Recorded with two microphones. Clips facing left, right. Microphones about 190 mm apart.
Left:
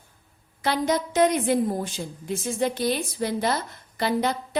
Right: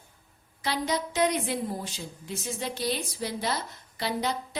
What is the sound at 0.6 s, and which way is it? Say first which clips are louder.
A woman's voice: left 5 dB; 50° left (ahead or behind).